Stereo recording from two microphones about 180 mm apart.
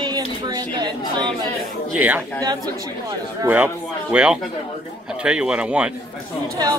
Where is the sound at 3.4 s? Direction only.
10° right (ahead or behind).